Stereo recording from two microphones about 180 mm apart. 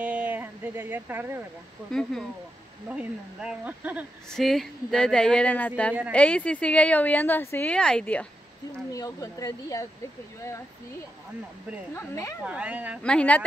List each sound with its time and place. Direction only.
0.0 s a sound: 10° right (ahead or behind)
1.9 s speech: 5° left (ahead or behind)
8.9 s speech: 20° left (ahead or behind)
11.9 s speech: 15° left (ahead or behind)
12.4 s speech: 5° right (ahead or behind)
13.0 s speech: 5° left (ahead or behind)